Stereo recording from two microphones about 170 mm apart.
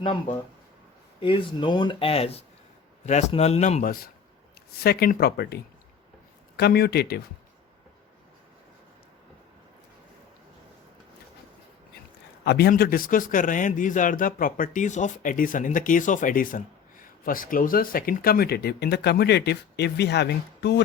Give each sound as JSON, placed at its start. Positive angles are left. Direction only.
{"t": 0.0, "sound": "a man's voice", "side_deg": 30}
{"t": 4.8, "sound": "speech", "side_deg": 65}
{"t": 6.6, "sound": "speech", "side_deg": 70}
{"t": 12.5, "sound": "a man's voice", "side_deg": 70}